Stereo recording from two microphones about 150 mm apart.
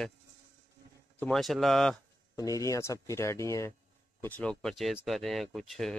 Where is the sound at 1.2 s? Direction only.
Centre (ahead or behind).